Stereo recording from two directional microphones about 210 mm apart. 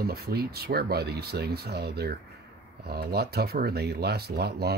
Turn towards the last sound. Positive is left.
turn(degrees=-50)  # may be behind; listen again after turning